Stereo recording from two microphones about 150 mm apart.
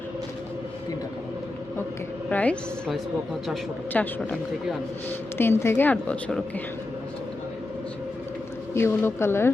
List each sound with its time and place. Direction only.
2.3 s speech: 10° left (ahead or behind)
5.4 s speech: 15° left (ahead or behind)
8.7 s speech: 15° left (ahead or behind)